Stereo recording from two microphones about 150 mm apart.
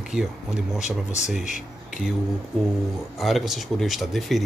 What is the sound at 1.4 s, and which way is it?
Speech, 55° left (ahead or behind).